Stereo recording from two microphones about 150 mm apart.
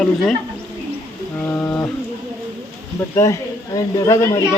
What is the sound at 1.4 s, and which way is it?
Speech, 15° left (ahead or behind).